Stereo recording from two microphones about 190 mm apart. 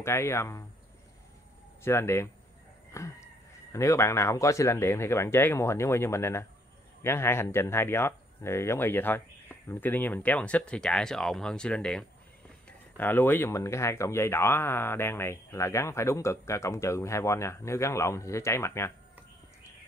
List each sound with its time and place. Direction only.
0.0 s speech: 15° left (ahead or behind)
1.8 s speech: 15° left (ahead or behind)
2.9 s chicken: 15° left (ahead or behind)
3.7 s speech: 15° left (ahead or behind)